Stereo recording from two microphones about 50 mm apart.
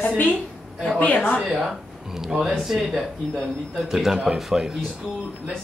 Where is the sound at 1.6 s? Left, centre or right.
Centre.